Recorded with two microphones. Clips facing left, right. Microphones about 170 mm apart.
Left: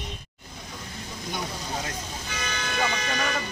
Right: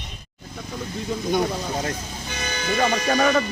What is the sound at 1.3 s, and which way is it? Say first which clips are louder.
Speech: right 9 dB; 50° right (ahead or behind).